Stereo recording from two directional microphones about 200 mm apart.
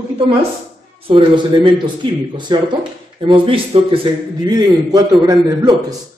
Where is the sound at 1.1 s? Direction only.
25° right (ahead or behind).